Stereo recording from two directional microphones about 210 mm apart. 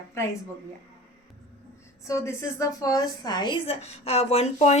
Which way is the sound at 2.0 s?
15° left (ahead or behind).